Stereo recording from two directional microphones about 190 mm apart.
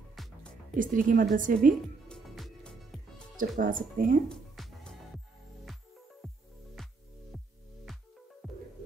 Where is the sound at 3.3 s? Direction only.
45° right (ahead or behind).